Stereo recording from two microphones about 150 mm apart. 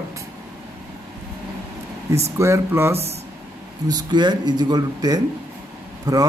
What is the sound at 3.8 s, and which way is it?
A man's voice, 30° right (ahead or behind).